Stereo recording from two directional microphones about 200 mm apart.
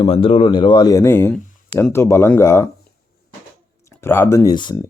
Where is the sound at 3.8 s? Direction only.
10° left (ahead or behind).